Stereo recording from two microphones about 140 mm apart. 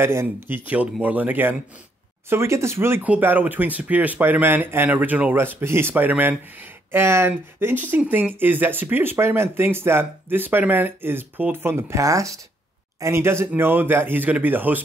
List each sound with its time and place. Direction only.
0.0 s speech: 15° right (ahead or behind)